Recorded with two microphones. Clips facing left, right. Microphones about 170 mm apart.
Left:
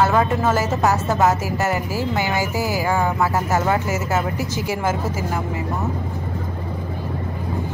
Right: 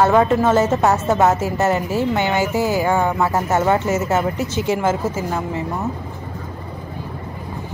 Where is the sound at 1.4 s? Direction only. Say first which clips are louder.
Right 4 dB; 25° right (ahead or behind).